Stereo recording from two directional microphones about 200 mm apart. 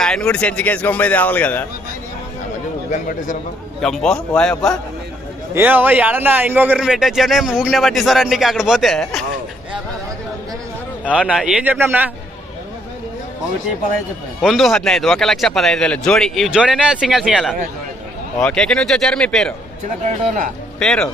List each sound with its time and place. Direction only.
0.0 s speech: 5° left (ahead or behind)
2.9 s a man's voice: 40° left (ahead or behind)
3.8 s speech: centre (ahead or behind)
5.5 s speech: 10° right (ahead or behind)
11.1 s a man's voice: 5° right (ahead or behind)
14.4 s speech: centre (ahead or behind)
20.7 s speech: 5° left (ahead or behind)